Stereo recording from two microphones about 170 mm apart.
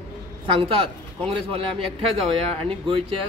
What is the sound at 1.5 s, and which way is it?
Speech, 35° right (ahead or behind).